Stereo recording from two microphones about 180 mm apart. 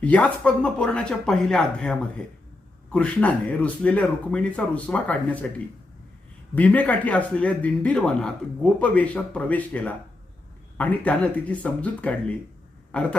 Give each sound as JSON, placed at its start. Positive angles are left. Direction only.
{"t": 0.0, "sound": "speech", "side_deg": 10}
{"t": 12.9, "sound": "throat clearing", "side_deg": 5}